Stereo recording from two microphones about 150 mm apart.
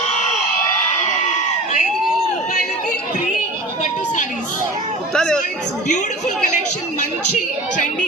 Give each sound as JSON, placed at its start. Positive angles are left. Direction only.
{"t": 5.1, "sound": "speech", "side_deg": 5}
{"t": 5.9, "sound": "a woman's voice", "side_deg": 55}